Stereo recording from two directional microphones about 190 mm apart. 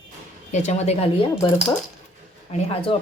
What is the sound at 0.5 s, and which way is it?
Speech, 35° left (ahead or behind).